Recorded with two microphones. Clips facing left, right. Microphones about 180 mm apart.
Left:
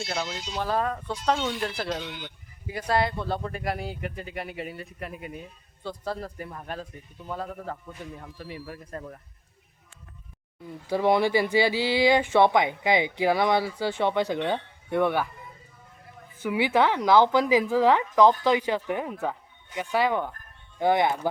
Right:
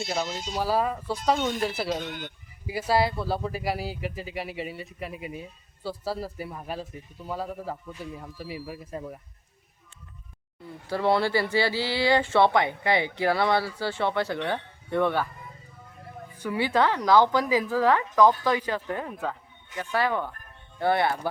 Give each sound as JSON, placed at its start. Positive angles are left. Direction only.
{"t": 0.5, "sound": "speech", "side_deg": -5}
{"t": 2.0, "sound": "speech", "side_deg": -50}
{"t": 2.6, "sound": "speech", "side_deg": -5}
{"t": 10.8, "sound": "speech", "side_deg": 15}
{"t": 16.4, "sound": "speech", "side_deg": 15}